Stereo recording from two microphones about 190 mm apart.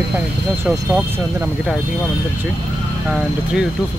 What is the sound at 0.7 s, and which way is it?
Speech, 10° right (ahead or behind).